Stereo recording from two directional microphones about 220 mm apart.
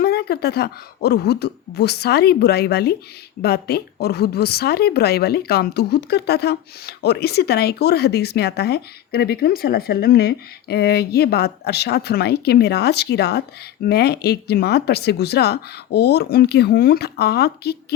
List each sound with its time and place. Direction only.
0.0 s a woman's voice: 45° left (ahead or behind)